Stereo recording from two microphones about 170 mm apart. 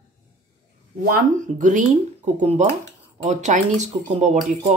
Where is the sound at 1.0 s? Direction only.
50° right (ahead or behind).